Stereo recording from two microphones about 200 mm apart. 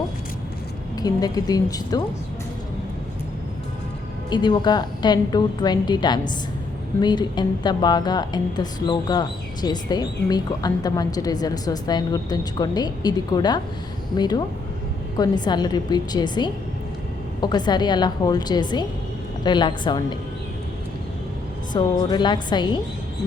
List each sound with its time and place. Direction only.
0.9 s a woman's voice: 20° left (ahead or behind)
4.3 s a woman's voice: 20° left (ahead or behind)
21.7 s a woman's voice: 20° left (ahead or behind)